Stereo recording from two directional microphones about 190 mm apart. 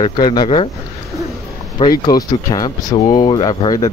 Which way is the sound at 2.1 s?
20° left (ahead or behind).